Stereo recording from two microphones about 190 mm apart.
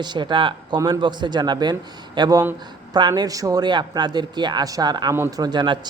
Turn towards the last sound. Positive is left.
turn(degrees=-25)  # may be behind; listen again after turning